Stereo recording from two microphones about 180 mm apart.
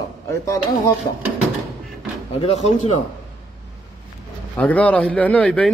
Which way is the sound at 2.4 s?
35° left (ahead or behind).